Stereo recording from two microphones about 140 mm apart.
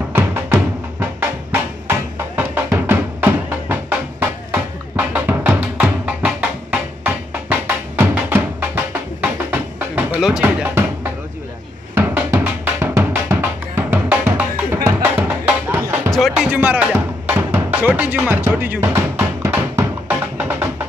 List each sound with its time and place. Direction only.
0.1 s music: 15° right (ahead or behind)
11.9 s drum: 15° right (ahead or behind)
14.9 s music: 15° right (ahead or behind)
16.1 s music: centre (ahead or behind)